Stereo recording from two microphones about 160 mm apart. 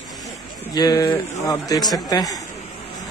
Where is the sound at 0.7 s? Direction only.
25° left (ahead or behind).